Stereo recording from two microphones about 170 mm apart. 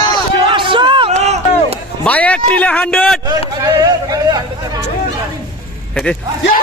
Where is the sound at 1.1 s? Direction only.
40° right (ahead or behind).